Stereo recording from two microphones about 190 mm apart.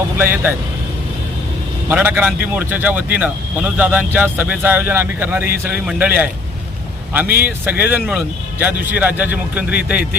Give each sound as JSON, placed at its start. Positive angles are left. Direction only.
{"t": 0.2, "sound": "speech", "side_deg": -10}
{"t": 1.9, "sound": "speech", "side_deg": -10}
{"t": 7.4, "sound": "speech", "side_deg": -10}